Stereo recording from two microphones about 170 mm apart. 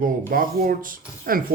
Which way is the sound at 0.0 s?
55° right (ahead or behind).